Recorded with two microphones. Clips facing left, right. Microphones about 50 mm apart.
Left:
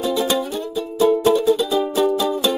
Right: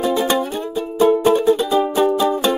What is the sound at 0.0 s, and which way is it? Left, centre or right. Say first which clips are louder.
Music: right 2 dB; right.